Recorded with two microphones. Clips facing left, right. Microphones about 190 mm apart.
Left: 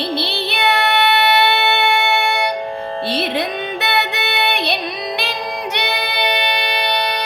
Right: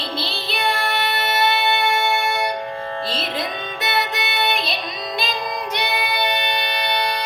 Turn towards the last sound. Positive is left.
turn(degrees=65)  # may be behind; listen again after turning